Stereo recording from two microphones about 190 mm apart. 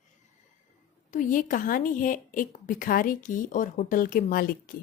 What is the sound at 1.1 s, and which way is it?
A woman's voice, 45° left (ahead or behind).